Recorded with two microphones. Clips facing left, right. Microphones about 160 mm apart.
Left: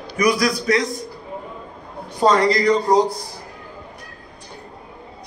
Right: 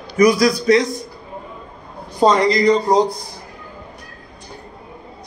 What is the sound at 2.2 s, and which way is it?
Speech, 20° right (ahead or behind).